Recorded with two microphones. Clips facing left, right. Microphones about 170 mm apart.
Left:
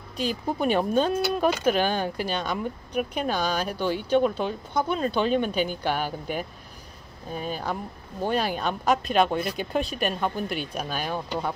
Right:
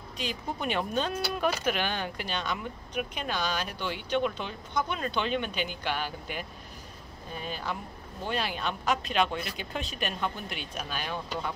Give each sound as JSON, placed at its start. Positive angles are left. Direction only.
{"t": 0.2, "sound": "speech", "side_deg": 40}